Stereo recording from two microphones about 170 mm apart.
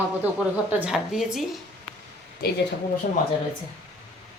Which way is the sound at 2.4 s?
65° left (ahead or behind).